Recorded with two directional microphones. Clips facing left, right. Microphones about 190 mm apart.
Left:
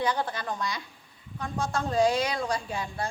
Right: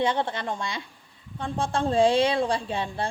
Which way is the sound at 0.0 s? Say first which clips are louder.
Right 3 dB; 25° right (ahead or behind).